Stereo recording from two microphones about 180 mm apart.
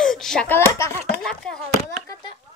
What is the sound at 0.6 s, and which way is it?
Speech, 15° left (ahead or behind).